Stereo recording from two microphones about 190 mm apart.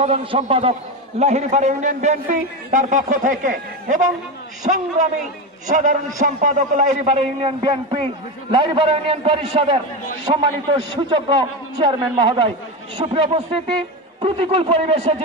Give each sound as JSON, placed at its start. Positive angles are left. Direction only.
{"t": 0.0, "sound": "a man's voice", "side_deg": -30}